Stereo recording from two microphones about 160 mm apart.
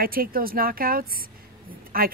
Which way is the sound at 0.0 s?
65° right (ahead or behind).